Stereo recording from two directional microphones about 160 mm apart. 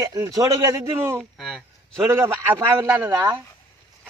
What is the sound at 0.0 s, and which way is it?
A man's voice, 25° right (ahead or behind).